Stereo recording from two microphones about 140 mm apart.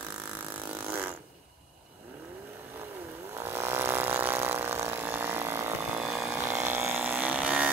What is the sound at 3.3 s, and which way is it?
Chainsaw, 15° right (ahead or behind).